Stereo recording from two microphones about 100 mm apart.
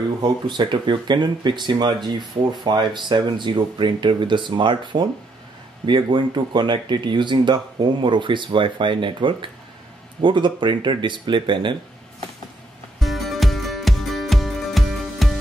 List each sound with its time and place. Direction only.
0.2 s speech: 50° right (ahead or behind)
13.0 s music: centre (ahead or behind)